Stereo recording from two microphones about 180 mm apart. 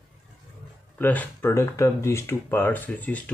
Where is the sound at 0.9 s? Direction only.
10° left (ahead or behind).